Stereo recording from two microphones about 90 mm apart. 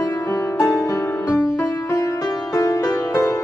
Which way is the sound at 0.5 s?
35° left (ahead or behind).